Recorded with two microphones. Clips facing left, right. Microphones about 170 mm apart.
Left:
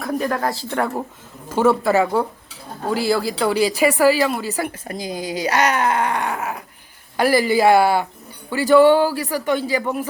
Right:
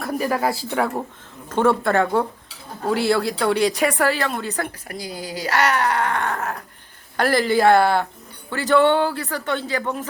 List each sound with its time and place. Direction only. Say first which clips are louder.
0.0 s speech: even; 5° right (ahead or behind)
4.9 s speech: left 5 dB; 20° left (ahead or behind)